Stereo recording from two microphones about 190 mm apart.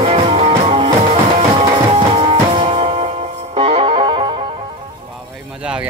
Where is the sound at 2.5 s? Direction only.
30° right (ahead or behind).